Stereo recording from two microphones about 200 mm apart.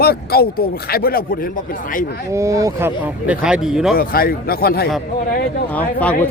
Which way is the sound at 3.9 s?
50° left (ahead or behind).